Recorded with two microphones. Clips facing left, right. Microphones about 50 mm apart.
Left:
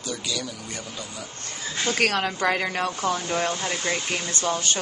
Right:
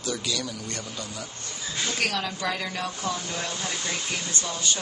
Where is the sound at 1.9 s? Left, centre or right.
Left.